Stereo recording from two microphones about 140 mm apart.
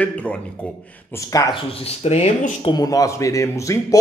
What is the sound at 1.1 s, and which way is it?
Speech, 25° left (ahead or behind).